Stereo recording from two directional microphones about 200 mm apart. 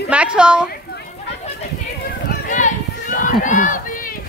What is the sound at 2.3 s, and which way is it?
Run, 40° left (ahead or behind).